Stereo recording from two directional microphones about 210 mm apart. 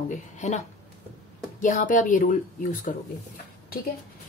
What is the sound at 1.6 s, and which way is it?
Speech, 35° left (ahead or behind).